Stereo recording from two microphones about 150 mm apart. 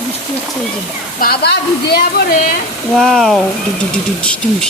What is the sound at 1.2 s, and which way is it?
Speech, 90° left.